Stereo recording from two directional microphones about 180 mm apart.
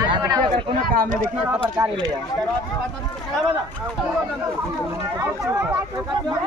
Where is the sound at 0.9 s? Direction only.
50° right (ahead or behind).